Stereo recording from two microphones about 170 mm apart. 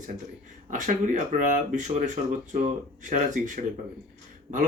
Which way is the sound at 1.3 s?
50° right (ahead or behind).